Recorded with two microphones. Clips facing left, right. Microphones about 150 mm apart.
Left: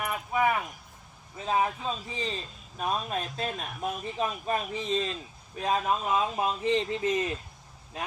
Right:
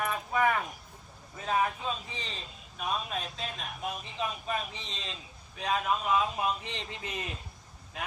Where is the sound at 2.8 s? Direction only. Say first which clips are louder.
Left 4 dB; 40° left (ahead or behind).